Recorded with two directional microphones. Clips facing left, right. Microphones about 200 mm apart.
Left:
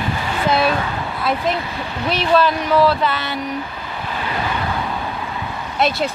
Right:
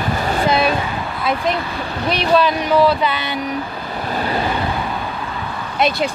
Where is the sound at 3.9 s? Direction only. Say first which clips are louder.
Right 4 dB; 40° right (ahead or behind).